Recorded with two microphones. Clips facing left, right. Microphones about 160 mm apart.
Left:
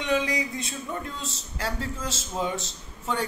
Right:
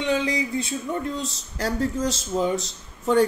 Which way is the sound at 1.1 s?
40° right (ahead or behind).